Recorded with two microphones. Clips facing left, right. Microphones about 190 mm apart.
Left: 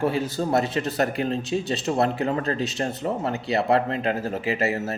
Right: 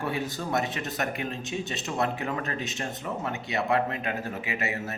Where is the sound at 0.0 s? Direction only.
30° left (ahead or behind).